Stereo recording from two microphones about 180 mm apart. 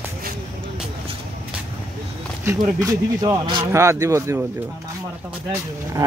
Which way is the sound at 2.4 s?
15° right (ahead or behind).